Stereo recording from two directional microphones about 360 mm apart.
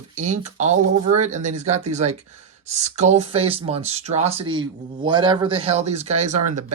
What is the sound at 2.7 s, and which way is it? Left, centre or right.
Speech, centre.